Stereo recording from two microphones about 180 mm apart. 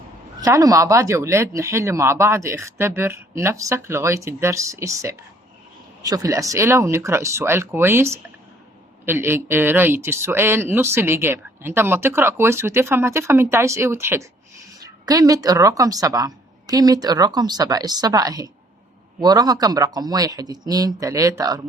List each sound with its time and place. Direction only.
0.4 s speech: 15° right (ahead or behind)